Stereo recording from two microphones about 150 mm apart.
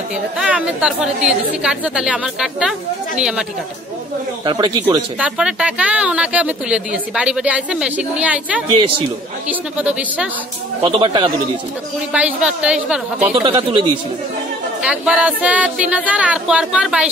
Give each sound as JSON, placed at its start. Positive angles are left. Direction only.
{"t": 0.4, "sound": "a woman's voice", "side_deg": -5}
{"t": 4.5, "sound": "a man's voice", "side_deg": -30}
{"t": 5.2, "sound": "speech", "side_deg": -5}
{"t": 8.7, "sound": "speech", "side_deg": -40}
{"t": 9.5, "sound": "speech", "side_deg": -10}
{"t": 10.8, "sound": "a man's voice", "side_deg": -30}
{"t": 12.1, "sound": "speech", "side_deg": -5}
{"t": 13.3, "sound": "speech", "side_deg": -35}
{"t": 14.8, "sound": "speech", "side_deg": -5}